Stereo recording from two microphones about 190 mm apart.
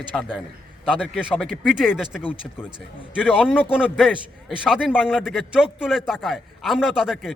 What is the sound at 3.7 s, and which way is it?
A man's voice, 5° right (ahead or behind).